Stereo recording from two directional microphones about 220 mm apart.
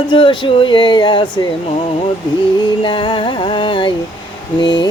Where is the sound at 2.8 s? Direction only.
20° left (ahead or behind).